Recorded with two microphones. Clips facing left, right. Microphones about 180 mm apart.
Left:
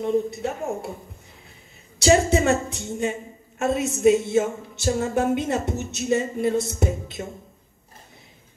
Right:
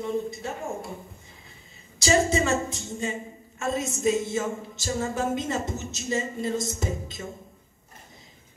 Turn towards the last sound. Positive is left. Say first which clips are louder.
# left 5 dB
turn(degrees=60)  # may be behind; listen again after turning